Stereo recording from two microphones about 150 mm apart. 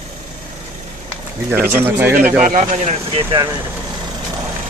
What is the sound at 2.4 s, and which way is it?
Speech, 55° right (ahead or behind).